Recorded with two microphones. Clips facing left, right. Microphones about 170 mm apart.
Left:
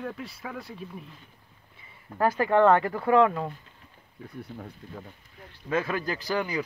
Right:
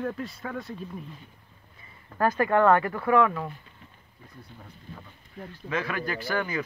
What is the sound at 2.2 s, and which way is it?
Speech, 15° left (ahead or behind).